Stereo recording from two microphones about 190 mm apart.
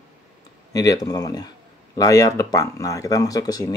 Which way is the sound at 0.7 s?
20° left (ahead or behind).